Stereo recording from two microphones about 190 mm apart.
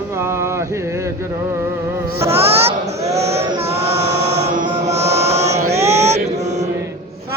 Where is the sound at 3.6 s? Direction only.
35° right (ahead or behind).